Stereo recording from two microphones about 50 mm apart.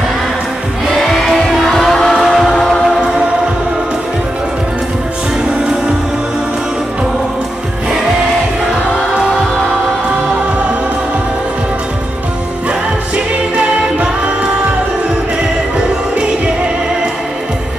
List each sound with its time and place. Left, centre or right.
0.9 s music: centre
13.9 s music: right